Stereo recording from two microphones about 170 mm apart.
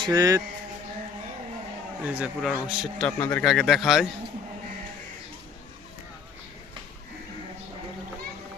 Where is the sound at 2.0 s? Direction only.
10° right (ahead or behind).